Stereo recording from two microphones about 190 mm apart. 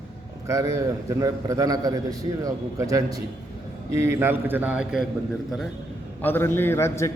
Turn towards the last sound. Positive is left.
turn(degrees=15)  # may be behind; listen again after turning